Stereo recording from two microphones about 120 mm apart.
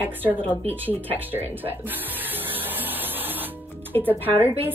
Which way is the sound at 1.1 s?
15° right (ahead or behind).